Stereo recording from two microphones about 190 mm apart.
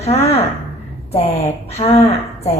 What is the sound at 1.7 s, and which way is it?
Speech, 35° left (ahead or behind).